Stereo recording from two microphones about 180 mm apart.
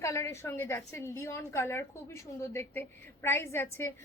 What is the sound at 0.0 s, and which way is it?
A woman's voice, 15° left (ahead or behind).